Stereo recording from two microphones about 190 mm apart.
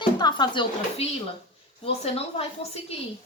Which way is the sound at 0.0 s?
25° left (ahead or behind).